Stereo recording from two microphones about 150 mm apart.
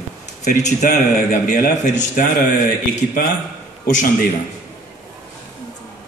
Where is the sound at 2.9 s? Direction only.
70° left (ahead or behind).